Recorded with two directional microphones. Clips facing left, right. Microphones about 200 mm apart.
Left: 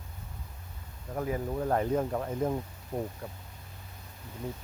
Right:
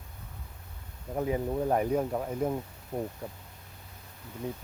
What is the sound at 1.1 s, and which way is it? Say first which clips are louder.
Speech: right 3 dB; 15° right (ahead or behind).